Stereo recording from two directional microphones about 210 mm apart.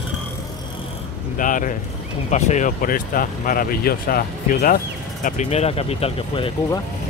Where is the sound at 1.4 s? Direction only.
40° left (ahead or behind).